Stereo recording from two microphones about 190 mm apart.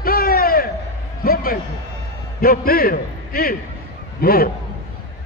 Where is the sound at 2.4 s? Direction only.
50° left (ahead or behind).